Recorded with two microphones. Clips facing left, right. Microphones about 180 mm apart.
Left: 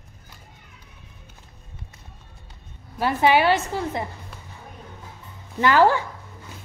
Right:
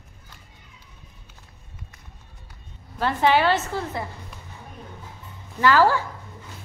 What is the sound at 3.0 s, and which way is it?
A woman's voice, 10° left (ahead or behind).